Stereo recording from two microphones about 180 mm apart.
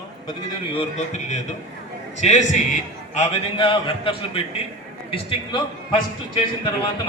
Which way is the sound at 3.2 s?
30° left (ahead or behind).